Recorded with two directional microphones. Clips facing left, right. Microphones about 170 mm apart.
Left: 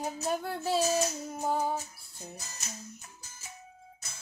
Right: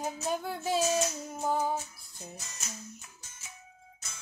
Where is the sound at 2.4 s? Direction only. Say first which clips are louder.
Left 1 dB; 35° left (ahead or behind).